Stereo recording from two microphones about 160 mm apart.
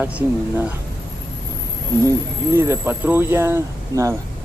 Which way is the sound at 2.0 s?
15° right (ahead or behind).